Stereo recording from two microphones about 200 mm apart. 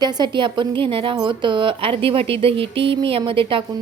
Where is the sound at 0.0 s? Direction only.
20° right (ahead or behind).